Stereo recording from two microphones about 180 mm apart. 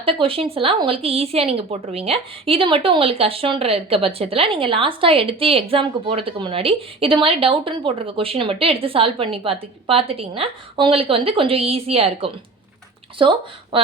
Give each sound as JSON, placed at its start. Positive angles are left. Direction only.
{"t": 0.0, "sound": "speech", "side_deg": -30}